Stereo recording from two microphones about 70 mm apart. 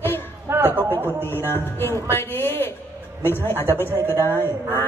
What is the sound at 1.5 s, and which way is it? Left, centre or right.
Speech, left.